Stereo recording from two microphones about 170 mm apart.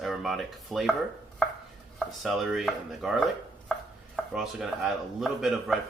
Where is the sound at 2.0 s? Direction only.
Centre (ahead or behind).